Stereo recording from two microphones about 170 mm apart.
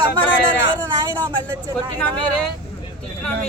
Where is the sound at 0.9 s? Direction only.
20° right (ahead or behind).